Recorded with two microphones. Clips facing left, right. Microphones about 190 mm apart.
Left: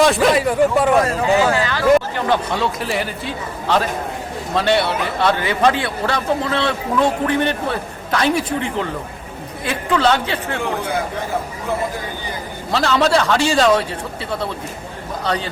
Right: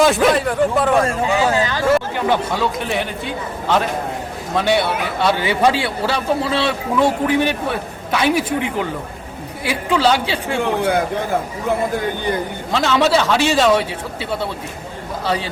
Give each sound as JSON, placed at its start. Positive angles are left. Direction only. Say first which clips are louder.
{"t": 0.0, "sound": "a man's voice", "louder": "even", "side_deg": 0}
{"t": 1.0, "sound": "a man's voice", "louder": "left 1 dB", "side_deg": -25}
{"t": 2.5, "sound": "a man's voice", "louder": "right 1 dB", "side_deg": 0}
{"t": 5.4, "sound": "a man's voice", "louder": "right 1 dB", "side_deg": -15}
{"t": 12.7, "sound": "a man's voice", "louder": "even", "side_deg": 0}